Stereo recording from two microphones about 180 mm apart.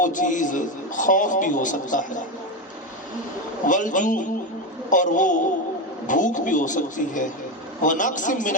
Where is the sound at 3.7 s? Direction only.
45° left (ahead or behind).